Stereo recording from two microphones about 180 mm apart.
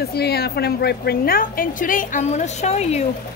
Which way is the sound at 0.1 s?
65° left (ahead or behind).